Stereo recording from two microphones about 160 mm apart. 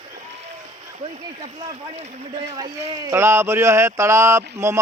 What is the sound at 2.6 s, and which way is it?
Speech, 20° right (ahead or behind).